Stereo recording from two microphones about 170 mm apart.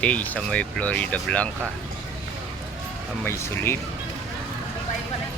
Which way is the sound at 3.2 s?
15° left (ahead or behind).